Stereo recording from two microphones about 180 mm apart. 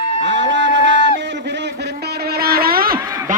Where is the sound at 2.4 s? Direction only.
60° right (ahead or behind).